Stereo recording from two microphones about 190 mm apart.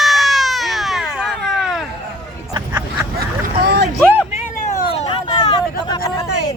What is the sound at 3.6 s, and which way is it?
Boat, 60° right (ahead or behind).